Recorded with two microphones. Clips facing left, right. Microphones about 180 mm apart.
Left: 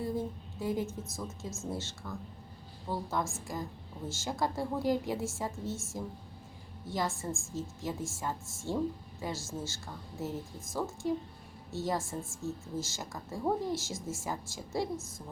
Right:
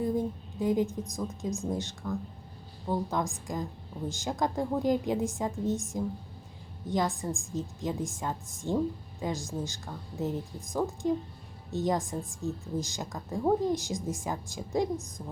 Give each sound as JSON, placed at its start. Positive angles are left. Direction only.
{"t": 0.0, "sound": "a woman's voice", "side_deg": -15}